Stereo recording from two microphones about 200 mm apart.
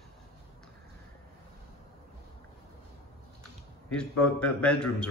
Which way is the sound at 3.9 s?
5° left (ahead or behind).